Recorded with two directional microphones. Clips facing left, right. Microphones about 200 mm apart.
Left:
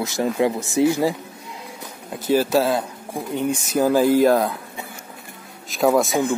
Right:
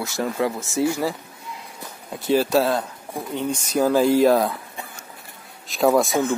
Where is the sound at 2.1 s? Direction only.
Centre (ahead or behind).